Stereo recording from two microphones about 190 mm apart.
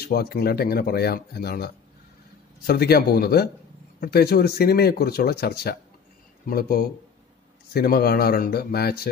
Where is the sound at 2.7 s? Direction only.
55° left (ahead or behind).